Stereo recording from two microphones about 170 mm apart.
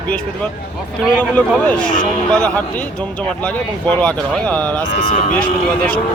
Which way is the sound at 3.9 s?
5° left (ahead or behind).